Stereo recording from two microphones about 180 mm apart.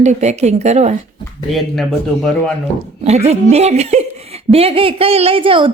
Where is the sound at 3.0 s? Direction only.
35° right (ahead or behind).